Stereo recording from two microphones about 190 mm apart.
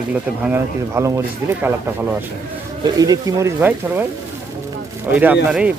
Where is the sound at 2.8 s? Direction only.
20° right (ahead or behind).